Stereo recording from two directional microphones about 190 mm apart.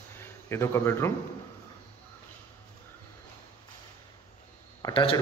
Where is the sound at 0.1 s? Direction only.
10° left (ahead or behind).